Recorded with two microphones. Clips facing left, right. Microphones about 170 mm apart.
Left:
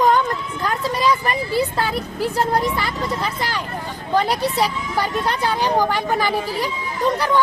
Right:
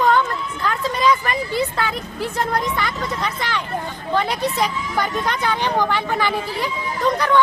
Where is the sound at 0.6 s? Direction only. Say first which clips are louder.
Right 1 dB; 35° left (ahead or behind).